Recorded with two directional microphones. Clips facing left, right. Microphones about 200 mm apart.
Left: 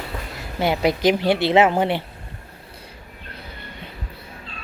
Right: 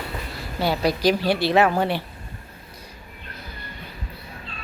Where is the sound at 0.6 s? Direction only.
20° left (ahead or behind).